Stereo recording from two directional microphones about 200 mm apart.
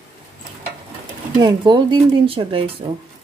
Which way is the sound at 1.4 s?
20° right (ahead or behind).